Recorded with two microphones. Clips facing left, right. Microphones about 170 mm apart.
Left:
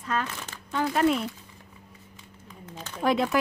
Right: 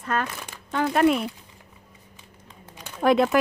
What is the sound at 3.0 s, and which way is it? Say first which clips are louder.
Speech: right 5 dB; 60° right (ahead or behind).